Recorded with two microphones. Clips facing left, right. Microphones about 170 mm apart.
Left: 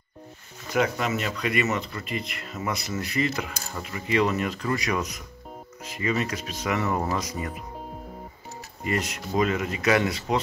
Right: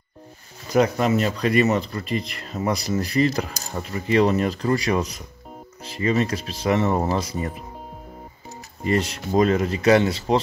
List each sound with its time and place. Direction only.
0.7 s speech: 35° right (ahead or behind)
8.8 s speech: 30° right (ahead or behind)